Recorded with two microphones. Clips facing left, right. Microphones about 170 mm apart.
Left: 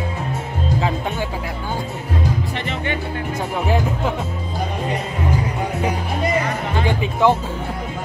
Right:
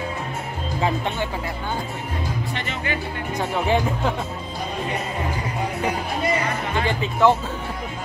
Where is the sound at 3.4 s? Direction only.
5° left (ahead or behind).